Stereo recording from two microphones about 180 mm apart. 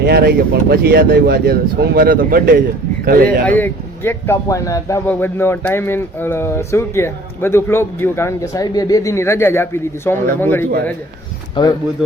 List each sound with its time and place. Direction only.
0.0 s speech: 65° right (ahead or behind)
3.2 s speech: 10° left (ahead or behind)
11.6 s speech: 25° left (ahead or behind)